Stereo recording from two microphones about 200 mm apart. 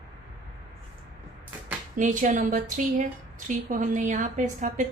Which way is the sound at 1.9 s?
40° right (ahead or behind).